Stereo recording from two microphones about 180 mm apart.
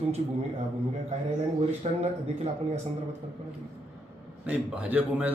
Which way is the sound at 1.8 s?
35° right (ahead or behind).